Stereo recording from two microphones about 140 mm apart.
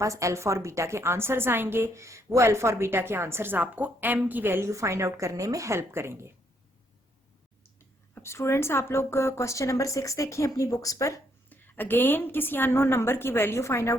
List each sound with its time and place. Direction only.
0.0 s a woman's voice: 20° right (ahead or behind)
8.1 s speech: 20° left (ahead or behind)
11.4 s a woman's voice: 15° left (ahead or behind)